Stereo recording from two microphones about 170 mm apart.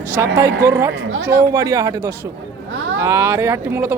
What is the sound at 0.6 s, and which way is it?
Speech, 15° right (ahead or behind).